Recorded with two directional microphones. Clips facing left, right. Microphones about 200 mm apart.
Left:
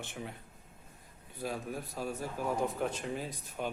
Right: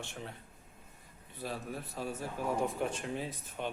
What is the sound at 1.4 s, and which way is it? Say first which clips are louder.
A man's voice: left 2 dB; centre (ahead or behind).